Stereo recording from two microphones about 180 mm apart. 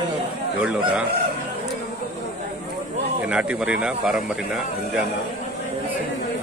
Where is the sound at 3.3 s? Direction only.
5° right (ahead or behind).